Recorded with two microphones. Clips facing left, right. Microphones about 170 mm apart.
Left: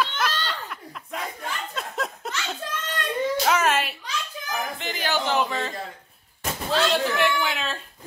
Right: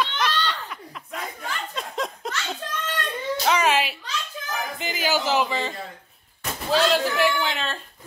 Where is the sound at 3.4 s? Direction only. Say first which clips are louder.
Right 4 dB; centre (ahead or behind).